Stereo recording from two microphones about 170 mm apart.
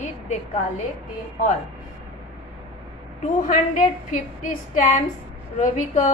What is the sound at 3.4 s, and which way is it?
A woman's voice, 50° left (ahead or behind).